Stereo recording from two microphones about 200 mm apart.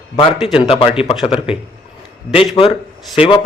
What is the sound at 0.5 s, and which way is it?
A man's voice, 25° left (ahead or behind).